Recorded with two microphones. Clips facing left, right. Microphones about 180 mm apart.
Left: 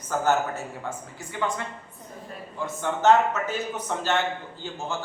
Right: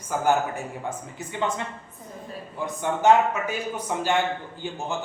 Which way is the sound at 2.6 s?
15° right (ahead or behind).